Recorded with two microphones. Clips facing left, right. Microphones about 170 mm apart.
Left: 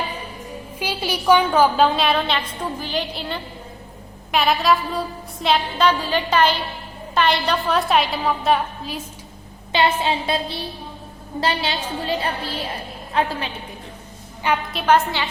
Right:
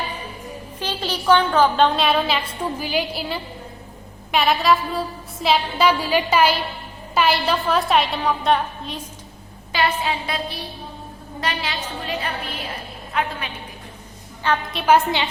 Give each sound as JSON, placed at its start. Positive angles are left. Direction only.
{"t": 0.8, "sound": "a woman's voice", "side_deg": 10}
{"t": 9.7, "sound": "a woman's voice", "side_deg": 25}
{"t": 14.7, "sound": "a woman's voice", "side_deg": 0}
{"t": 14.9, "sound": "a woman's voice", "side_deg": -20}